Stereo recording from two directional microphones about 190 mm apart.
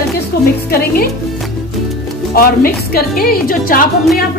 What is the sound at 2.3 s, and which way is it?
A woman's voice, 55° left (ahead or behind).